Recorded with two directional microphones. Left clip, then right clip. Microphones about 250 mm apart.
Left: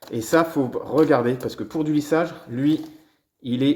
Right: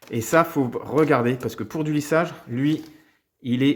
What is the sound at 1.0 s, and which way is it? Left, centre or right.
Speech, right.